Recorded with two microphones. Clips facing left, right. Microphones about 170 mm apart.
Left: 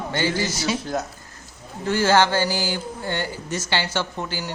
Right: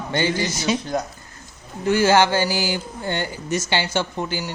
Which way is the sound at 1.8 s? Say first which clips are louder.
Right 2 dB; 15° right (ahead or behind).